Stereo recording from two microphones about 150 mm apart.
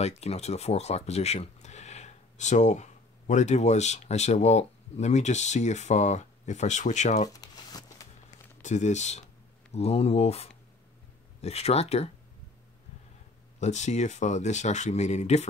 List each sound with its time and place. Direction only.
0.0 s speech: 45° left (ahead or behind)
7.2 s a sound: 25° left (ahead or behind)
8.6 s speech: 50° left (ahead or behind)
13.6 s speech: 50° left (ahead or behind)